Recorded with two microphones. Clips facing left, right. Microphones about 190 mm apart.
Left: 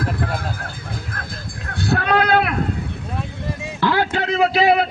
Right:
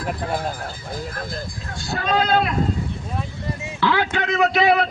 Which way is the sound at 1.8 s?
60° left (ahead or behind).